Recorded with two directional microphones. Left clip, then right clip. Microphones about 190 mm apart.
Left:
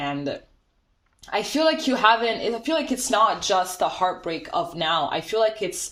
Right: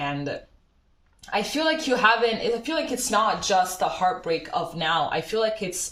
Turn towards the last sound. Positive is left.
turn(degrees=45)  # may be behind; listen again after turning